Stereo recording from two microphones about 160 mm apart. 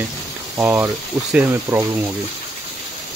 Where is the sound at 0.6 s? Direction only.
15° right (ahead or behind).